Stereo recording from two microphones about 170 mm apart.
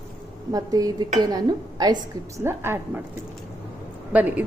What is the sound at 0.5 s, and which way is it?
Speech, 20° right (ahead or behind).